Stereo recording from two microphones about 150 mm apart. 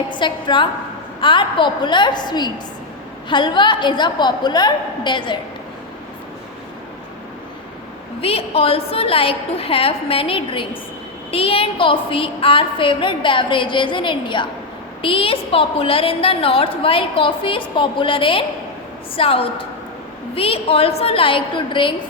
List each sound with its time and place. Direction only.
0.1 s a woman's voice: 30° left (ahead or behind)
8.2 s a woman's voice: 40° left (ahead or behind)